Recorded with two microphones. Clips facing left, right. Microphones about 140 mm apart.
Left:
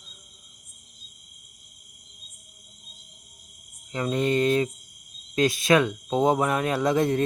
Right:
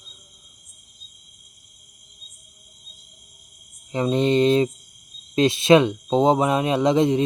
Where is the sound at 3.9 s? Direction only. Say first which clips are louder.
Right 5 dB; 25° right (ahead or behind).